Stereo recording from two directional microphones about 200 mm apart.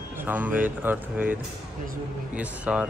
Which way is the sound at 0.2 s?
10° right (ahead or behind).